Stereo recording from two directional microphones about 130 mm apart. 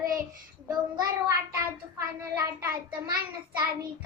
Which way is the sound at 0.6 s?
25° right (ahead or behind).